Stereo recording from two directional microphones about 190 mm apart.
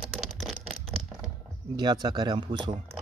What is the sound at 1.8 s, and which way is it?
Speech, 20° right (ahead or behind).